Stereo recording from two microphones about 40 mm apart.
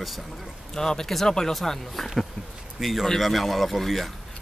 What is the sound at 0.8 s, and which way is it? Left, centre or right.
Speech, centre.